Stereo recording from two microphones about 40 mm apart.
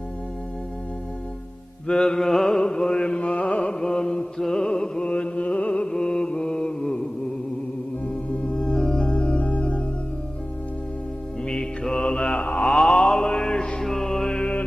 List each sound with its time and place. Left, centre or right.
1.9 s mantra: centre
5.1 s music: left
5.9 s mantra: centre
8.1 s singing bowl: left
11.4 s mantra: centre
12.4 s mantra: left
12.6 s mantra: centre
13.8 s music: centre